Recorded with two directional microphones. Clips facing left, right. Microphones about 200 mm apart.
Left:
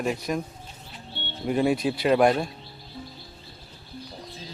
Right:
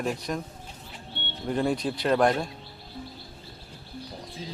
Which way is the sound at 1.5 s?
10° left (ahead or behind).